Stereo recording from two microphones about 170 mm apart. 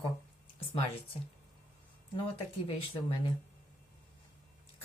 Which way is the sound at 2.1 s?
30° left (ahead or behind).